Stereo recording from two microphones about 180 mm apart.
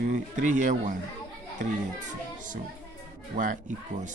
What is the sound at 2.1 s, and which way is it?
Speech, 45° right (ahead or behind).